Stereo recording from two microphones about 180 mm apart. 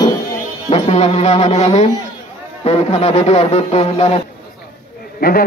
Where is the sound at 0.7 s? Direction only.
35° left (ahead or behind).